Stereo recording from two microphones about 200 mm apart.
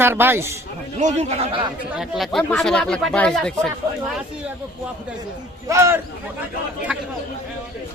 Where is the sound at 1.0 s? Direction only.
35° right (ahead or behind).